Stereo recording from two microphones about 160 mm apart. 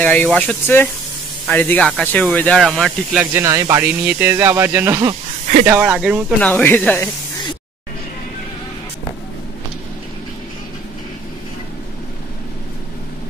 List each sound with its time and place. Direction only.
0.0 s speech: 10° left (ahead or behind)
3.3 s speech: 20° right (ahead or behind)
6.4 s speech: 10° left (ahead or behind)